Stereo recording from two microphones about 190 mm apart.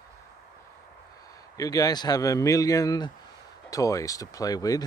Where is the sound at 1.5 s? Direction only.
20° left (ahead or behind).